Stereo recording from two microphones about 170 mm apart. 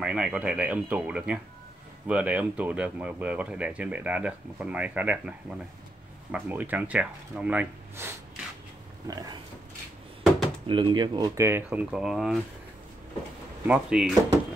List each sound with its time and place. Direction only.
0.0 s speech: 5° right (ahead or behind)
9.0 s pig: 20° right (ahead or behind)
10.7 s speech: 30° right (ahead or behind); by 12.4 s centre (ahead or behind)
13.7 s speech: 5° right (ahead or behind)